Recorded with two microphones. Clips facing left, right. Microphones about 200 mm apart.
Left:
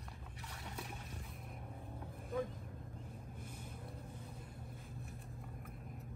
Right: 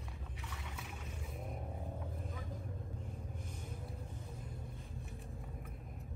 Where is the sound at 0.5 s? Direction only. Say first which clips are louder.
Left 4 dB; 40° left (ahead or behind).